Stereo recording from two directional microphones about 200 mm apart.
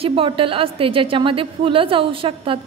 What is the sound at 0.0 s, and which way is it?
A woman's voice, 25° right (ahead or behind).